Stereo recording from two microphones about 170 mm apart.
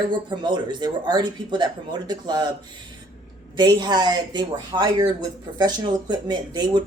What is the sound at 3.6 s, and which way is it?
Speech, 25° right (ahead or behind).